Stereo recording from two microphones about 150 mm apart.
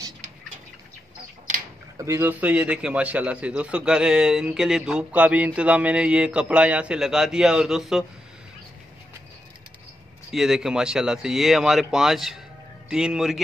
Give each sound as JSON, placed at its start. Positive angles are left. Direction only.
{"t": 2.0, "sound": "a man's voice", "side_deg": -20}
{"t": 10.3, "sound": "speech", "side_deg": -5}